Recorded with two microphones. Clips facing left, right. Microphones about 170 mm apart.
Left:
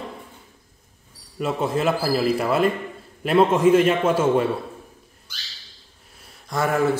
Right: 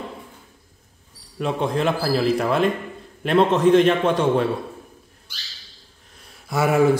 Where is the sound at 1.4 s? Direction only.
5° left (ahead or behind).